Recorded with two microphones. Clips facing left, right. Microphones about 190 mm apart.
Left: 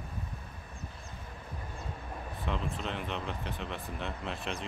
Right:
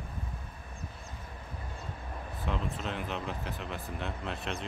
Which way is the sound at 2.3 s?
Centre (ahead or behind).